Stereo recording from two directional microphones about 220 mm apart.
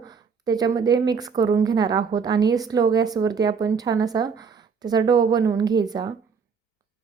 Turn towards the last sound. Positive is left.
turn(degrees=-20)  # may be behind; listen again after turning